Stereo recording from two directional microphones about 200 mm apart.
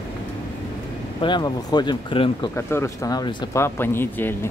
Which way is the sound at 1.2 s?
20° left (ahead or behind).